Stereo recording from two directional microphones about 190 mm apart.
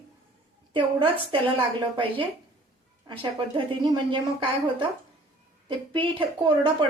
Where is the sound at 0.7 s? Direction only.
25° right (ahead or behind).